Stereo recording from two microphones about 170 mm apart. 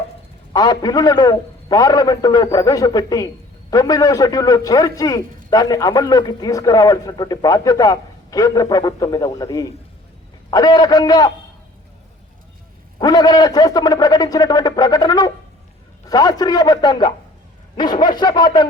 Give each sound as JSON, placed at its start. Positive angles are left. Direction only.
{"t": 0.5, "sound": "a man's voice", "side_deg": 25}
{"t": 13.0, "sound": "a man's voice", "side_deg": 20}